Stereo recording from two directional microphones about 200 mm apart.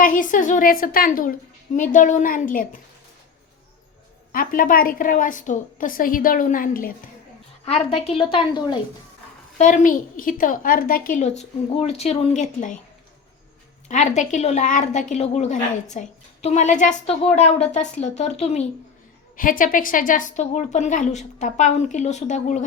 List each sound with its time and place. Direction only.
0.0 s a woman's voice: 40° left (ahead or behind)
4.3 s a woman's voice: 45° left (ahead or behind)
7.6 s a woman's voice: 30° left (ahead or behind)
9.6 s a woman's voice: 40° left (ahead or behind)
13.8 s a woman's voice: 35° left (ahead or behind)
19.4 s a woman's voice: 45° left (ahead or behind)